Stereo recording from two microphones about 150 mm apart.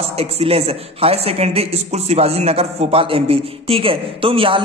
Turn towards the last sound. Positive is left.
turn(degrees=-35)  # may be behind; listen again after turning